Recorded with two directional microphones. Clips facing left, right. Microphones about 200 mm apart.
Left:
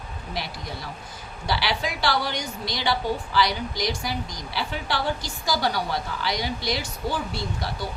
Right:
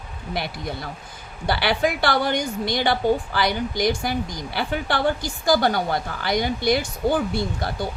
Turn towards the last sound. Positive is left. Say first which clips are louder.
# right 5 dB
turn(degrees=-55)  # may be behind; listen again after turning